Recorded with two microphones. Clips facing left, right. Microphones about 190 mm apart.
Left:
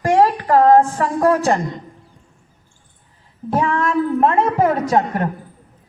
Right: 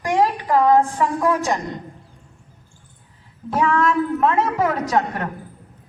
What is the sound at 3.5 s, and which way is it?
Child singing, 30° left (ahead or behind).